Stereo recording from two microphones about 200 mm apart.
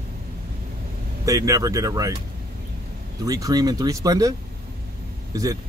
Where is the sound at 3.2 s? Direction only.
20° right (ahead or behind).